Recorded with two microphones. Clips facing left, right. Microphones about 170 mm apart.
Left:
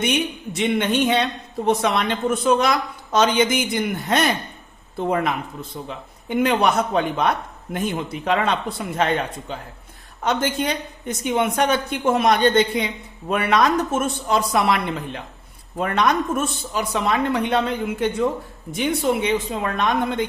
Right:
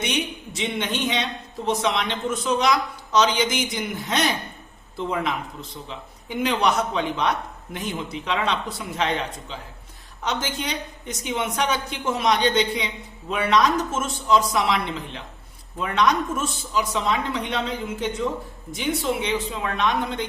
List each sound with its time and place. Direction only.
0.5 s a woman's voice: 55° left (ahead or behind)